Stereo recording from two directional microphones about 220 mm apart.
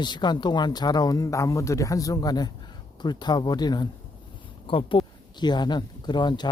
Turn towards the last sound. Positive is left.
turn(degrees=20)  # may be behind; listen again after turning